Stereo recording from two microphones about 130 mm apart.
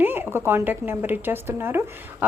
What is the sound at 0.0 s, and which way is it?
A woman's voice, 15° right (ahead or behind).